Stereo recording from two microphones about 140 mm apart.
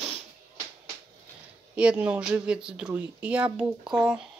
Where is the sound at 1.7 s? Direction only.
10° right (ahead or behind).